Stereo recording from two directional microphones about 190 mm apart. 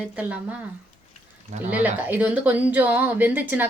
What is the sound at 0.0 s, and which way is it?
Speech, 5° right (ahead or behind).